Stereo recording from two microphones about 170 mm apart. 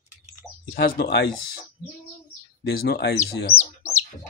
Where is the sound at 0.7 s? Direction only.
65° left (ahead or behind).